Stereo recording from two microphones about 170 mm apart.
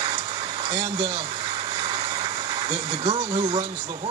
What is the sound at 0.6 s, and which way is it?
Speech, 25° right (ahead or behind).